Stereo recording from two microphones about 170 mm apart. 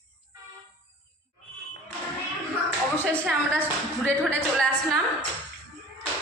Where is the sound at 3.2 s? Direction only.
10° right (ahead or behind).